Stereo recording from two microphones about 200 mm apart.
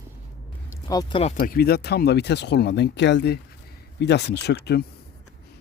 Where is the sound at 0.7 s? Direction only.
20° left (ahead or behind).